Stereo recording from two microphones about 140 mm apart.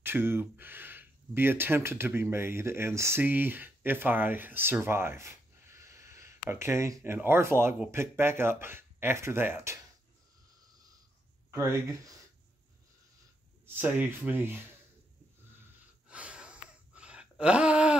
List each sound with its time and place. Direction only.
0.0 s speech: 15° right (ahead or behind)
11.5 s speech: 20° right (ahead or behind)
13.7 s speech: 10° right (ahead or behind)
16.1 s gasp: 10° right (ahead or behind)